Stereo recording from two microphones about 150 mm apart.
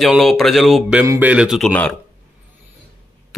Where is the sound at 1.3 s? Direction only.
5° right (ahead or behind).